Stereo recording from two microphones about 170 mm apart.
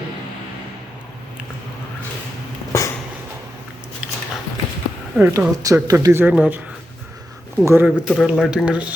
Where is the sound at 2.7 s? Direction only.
20° left (ahead or behind).